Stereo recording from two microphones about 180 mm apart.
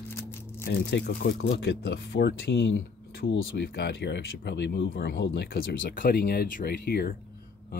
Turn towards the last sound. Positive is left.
turn(degrees=60)  # may be behind; listen again after turning